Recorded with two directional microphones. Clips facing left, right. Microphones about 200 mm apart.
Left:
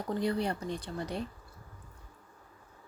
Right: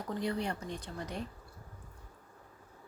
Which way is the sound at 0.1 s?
35° left (ahead or behind).